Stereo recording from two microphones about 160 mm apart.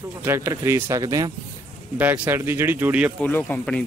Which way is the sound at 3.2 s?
10° left (ahead or behind).